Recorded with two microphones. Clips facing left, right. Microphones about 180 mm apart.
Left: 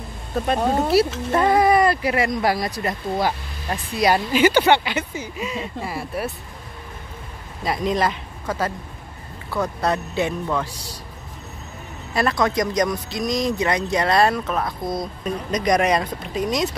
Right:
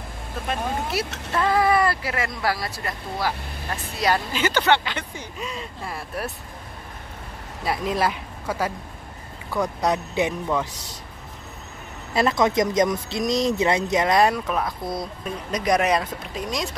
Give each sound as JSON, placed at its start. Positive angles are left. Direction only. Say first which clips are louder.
{"t": 0.9, "sound": "speech", "louder": "left 13 dB", "side_deg": 35}
{"t": 1.3, "sound": "speech", "louder": "left 3 dB", "side_deg": 20}
{"t": 7.6, "sound": "speech", "louder": "left 2 dB", "side_deg": -5}
{"t": 12.1, "sound": "speech", "louder": "right 1 dB", "side_deg": -20}